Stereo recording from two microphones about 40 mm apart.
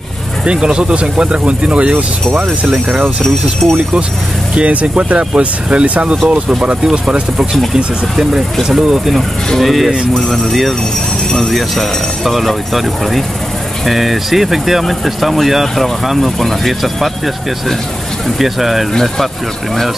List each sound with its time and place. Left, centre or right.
0.5 s speech: right
3.6 s speech: centre
4.6 s speech: right; by 9.1 s centre
9.6 s speech: centre
11.2 s speech: centre
11.5 s speech: centre
18.4 s speech: centre